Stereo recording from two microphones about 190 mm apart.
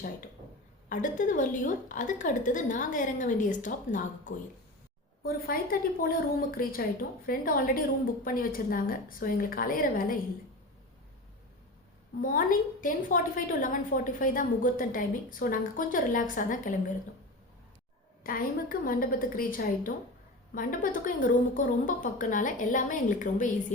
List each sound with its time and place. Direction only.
0.9 s a woman's voice: 45° left (ahead or behind)
12.2 s a woman's voice: 45° left (ahead or behind)
18.2 s a woman's voice: 50° left (ahead or behind)